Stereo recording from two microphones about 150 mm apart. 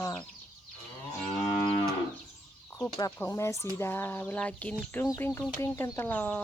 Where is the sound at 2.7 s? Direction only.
20° left (ahead or behind).